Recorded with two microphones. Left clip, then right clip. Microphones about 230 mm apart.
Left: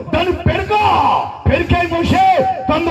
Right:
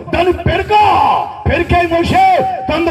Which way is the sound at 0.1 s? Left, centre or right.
Right.